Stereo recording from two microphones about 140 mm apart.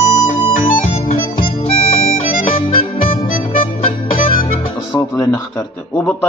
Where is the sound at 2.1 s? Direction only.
80° left.